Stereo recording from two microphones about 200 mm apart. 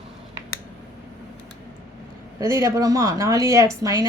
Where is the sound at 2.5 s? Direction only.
15° right (ahead or behind).